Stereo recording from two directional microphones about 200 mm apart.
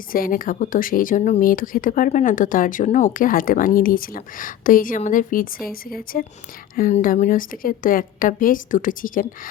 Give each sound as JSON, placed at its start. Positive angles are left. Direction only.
{"t": 0.1, "sound": "speech", "side_deg": 45}